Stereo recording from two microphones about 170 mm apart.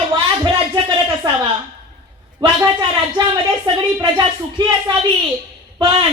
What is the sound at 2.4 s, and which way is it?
Speech, 25° right (ahead or behind).